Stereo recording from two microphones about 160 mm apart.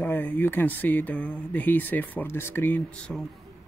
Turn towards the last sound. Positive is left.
turn(degrees=10)  # may be behind; listen again after turning